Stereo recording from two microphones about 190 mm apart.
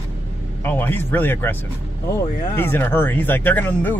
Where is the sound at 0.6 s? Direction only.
10° left (ahead or behind).